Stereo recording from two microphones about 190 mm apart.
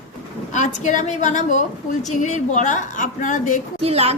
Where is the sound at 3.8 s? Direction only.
30° right (ahead or behind).